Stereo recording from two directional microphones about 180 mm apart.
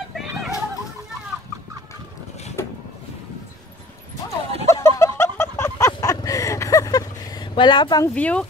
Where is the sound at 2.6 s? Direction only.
15° left (ahead or behind).